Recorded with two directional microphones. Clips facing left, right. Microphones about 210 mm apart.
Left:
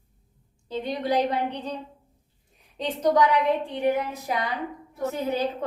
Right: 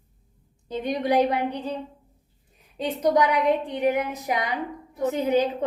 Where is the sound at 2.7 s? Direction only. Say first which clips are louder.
Even; 10° right (ahead or behind).